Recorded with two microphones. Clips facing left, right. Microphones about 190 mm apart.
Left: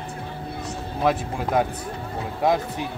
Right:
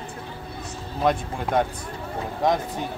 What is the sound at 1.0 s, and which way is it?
Speech, 5° left (ahead or behind).